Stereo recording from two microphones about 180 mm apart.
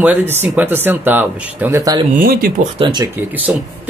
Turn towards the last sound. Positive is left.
turn(degrees=-10)  # may be behind; listen again after turning